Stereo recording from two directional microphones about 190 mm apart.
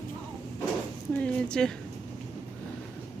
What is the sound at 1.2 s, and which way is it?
Speech, 5° left (ahead or behind).